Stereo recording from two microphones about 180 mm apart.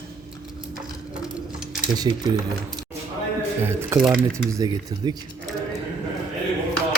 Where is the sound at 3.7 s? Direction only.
15° right (ahead or behind).